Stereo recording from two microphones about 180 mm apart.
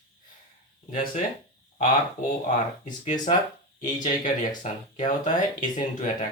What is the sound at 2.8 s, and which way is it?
Speech, 45° left (ahead or behind).